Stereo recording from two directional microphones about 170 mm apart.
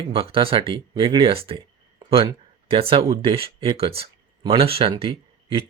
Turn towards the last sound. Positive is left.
turn(degrees=-30)  # may be behind; listen again after turning